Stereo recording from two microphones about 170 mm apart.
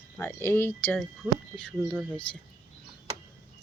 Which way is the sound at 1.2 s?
5° right (ahead or behind).